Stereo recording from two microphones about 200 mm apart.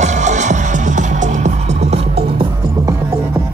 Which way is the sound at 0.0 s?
35° right (ahead or behind).